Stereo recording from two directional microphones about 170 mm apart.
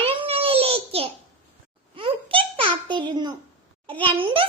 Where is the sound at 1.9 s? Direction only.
30° right (ahead or behind).